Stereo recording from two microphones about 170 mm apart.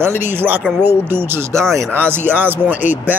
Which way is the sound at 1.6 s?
Centre (ahead or behind).